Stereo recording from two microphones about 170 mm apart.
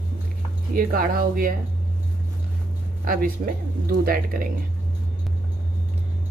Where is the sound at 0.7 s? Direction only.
60° right (ahead or behind).